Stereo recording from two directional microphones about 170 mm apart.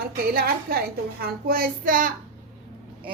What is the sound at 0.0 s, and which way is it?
Speech, 60° right (ahead or behind).